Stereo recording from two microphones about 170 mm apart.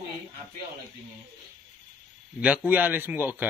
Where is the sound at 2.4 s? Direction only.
10° right (ahead or behind).